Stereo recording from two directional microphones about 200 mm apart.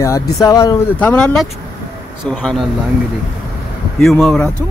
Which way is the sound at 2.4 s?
5° left (ahead or behind).